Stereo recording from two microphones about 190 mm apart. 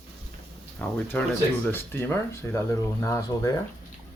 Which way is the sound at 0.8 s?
10° left (ahead or behind).